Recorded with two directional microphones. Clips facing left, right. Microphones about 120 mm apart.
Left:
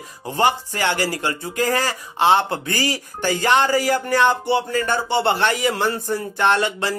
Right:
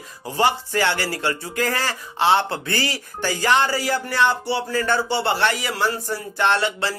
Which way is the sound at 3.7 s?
45° left (ahead or behind).